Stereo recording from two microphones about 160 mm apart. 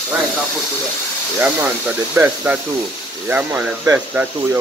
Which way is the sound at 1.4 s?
10° right (ahead or behind).